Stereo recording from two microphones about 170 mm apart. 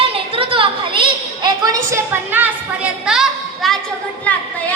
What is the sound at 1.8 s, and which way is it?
A woman's voice, 15° right (ahead or behind).